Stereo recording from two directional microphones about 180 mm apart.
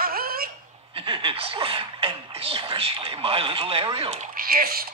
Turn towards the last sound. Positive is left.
turn(degrees=-55)  # may be behind; listen again after turning